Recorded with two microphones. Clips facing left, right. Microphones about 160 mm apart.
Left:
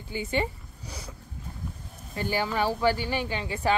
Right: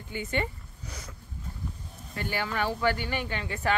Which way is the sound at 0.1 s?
30° left (ahead or behind).